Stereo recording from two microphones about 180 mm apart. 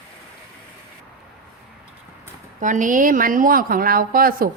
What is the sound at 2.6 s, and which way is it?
A woman's voice, 45° right (ahead or behind).